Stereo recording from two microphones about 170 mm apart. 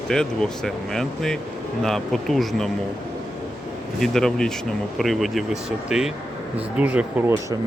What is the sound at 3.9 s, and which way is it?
Speech, centre (ahead or behind).